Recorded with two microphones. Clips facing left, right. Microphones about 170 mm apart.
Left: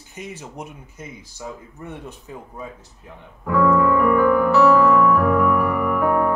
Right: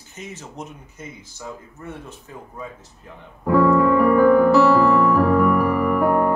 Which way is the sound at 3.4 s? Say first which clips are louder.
Right 2 dB; 35° right (ahead or behind).